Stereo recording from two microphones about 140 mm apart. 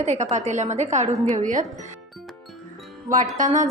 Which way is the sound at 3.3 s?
60° right (ahead or behind).